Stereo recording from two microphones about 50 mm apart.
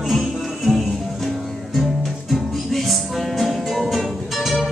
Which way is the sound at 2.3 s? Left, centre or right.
Centre.